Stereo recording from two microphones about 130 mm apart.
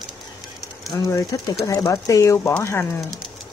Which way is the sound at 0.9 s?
25° left (ahead or behind).